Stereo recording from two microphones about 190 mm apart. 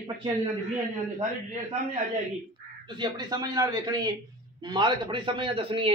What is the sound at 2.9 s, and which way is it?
A man's voice, 25° right (ahead or behind).